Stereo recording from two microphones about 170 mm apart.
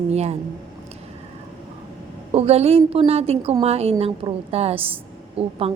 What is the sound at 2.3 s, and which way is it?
A woman's voice, 35° right (ahead or behind).